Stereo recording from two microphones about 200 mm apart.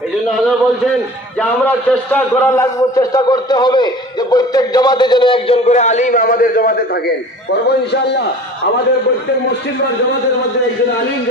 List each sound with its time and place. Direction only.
0.3 s a man's voice: centre (ahead or behind); by 6.8 s 45° left (ahead or behind)
7.6 s a man's voice: 55° left (ahead or behind)